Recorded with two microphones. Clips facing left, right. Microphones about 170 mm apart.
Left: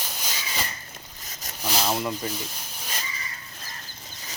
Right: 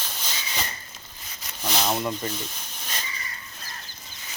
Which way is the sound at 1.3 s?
45° left (ahead or behind).